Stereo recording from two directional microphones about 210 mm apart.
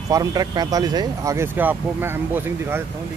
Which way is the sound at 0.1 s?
15° right (ahead or behind).